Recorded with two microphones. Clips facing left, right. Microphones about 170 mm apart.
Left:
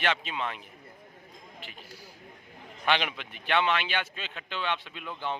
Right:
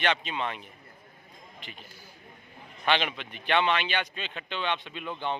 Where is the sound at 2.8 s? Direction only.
5° left (ahead or behind).